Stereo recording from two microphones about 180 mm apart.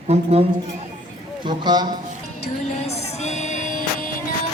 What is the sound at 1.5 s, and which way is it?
Speech, 25° right (ahead or behind).